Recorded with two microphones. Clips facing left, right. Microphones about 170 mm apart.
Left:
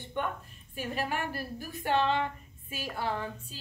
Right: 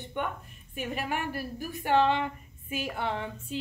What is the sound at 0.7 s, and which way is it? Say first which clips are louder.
A woman's voice: right 1 dB; 15° right (ahead or behind).